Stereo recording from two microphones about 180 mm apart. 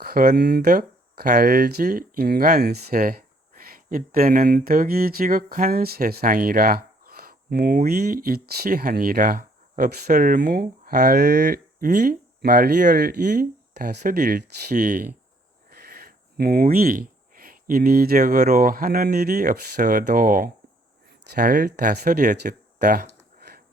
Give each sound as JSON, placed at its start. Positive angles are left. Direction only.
{"t": 0.0, "sound": "speech", "side_deg": -55}
{"t": 15.7, "sound": "speech", "side_deg": -60}